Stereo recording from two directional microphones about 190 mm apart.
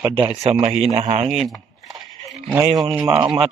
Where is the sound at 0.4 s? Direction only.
35° right (ahead or behind).